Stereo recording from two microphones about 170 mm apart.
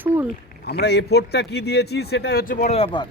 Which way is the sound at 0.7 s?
75° left (ahead or behind).